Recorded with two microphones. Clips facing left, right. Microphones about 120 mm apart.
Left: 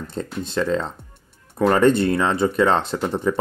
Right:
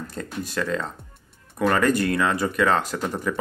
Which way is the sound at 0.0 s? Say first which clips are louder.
Left 3 dB; 25° left (ahead or behind).